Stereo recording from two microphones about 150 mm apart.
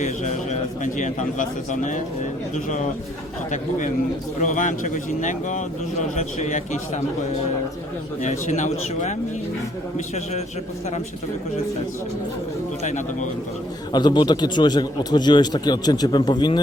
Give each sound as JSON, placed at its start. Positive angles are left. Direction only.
{"t": 0.0, "sound": "a man's voice", "side_deg": 50}
{"t": 4.4, "sound": "a man's voice", "side_deg": 55}
{"t": 8.2, "sound": "a man's voice", "side_deg": 50}
{"t": 12.8, "sound": "a man's voice", "side_deg": 55}
{"t": 13.9, "sound": "a man's voice", "side_deg": 30}